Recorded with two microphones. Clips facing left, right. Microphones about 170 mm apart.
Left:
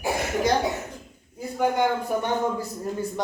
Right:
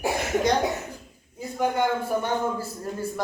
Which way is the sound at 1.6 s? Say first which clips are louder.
Left 1 dB; 10° left (ahead or behind).